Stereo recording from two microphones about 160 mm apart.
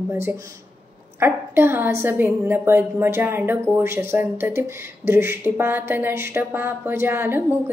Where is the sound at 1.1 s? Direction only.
15° right (ahead or behind).